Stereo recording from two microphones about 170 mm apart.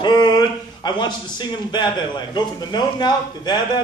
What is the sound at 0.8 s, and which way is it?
A man's voice, 25° left (ahead or behind).